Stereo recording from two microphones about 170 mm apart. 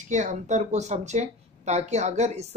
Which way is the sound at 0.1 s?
45° right (ahead or behind).